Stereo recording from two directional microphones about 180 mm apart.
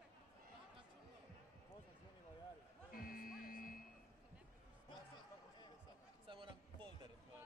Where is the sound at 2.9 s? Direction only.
55° left (ahead or behind).